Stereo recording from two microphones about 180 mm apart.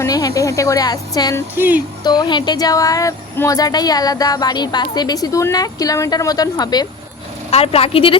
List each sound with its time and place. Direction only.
0.0 s speech: 20° left (ahead or behind)
1.5 s speech: 10° right (ahead or behind)
2.0 s speech: 25° left (ahead or behind)
7.5 s a woman's voice: 35° left (ahead or behind)